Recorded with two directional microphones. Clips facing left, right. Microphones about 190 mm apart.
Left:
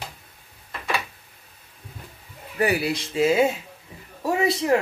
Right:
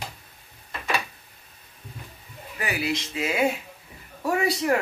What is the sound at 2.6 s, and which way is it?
Speech, 35° left (ahead or behind).